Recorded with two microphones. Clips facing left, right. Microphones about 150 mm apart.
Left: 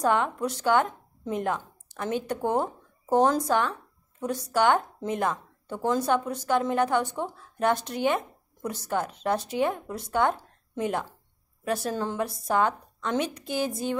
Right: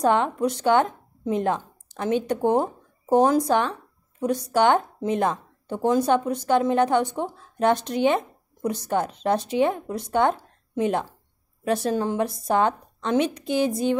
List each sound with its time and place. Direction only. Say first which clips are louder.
0.0 s a woman's voice: right 4 dB; 20° right (ahead or behind)